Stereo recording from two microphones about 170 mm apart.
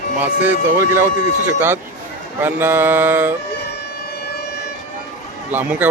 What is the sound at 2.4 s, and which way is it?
Speech, 10° right (ahead or behind).